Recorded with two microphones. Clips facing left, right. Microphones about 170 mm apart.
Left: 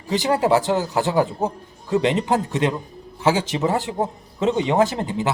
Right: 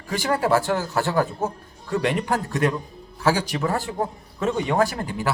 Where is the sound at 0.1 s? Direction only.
20° left (ahead or behind).